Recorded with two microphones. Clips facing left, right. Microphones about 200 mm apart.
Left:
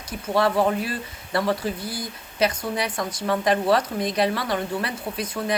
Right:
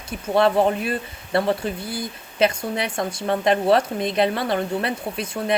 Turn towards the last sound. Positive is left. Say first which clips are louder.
# right 1 dB
turn(degrees=-25)  # may be behind; listen again after turning